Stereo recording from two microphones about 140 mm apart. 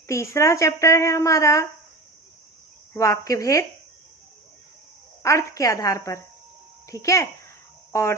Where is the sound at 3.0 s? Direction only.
20° left (ahead or behind).